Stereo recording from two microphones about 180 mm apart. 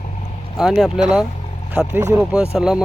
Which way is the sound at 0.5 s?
Centre (ahead or behind).